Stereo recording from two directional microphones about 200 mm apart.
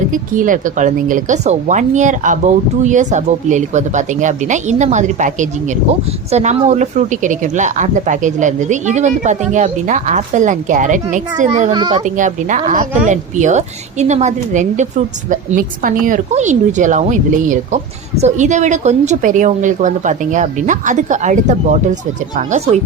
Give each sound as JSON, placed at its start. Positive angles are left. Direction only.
{"t": 0.1, "sound": "speech", "side_deg": -40}
{"t": 11.7, "sound": "speech", "side_deg": -20}
{"t": 12.0, "sound": "speech", "side_deg": -40}